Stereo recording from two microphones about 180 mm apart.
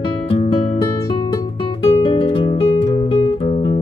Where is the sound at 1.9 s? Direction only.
30° left (ahead or behind).